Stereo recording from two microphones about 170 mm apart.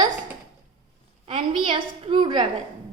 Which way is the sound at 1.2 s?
30° right (ahead or behind).